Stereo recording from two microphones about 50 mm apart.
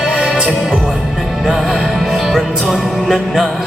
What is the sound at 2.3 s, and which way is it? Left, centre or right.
Music, centre.